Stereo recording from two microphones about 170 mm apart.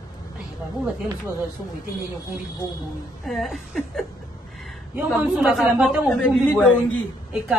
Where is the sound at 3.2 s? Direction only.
Centre (ahead or behind).